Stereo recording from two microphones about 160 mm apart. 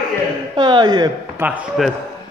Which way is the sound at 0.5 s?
30° right (ahead or behind).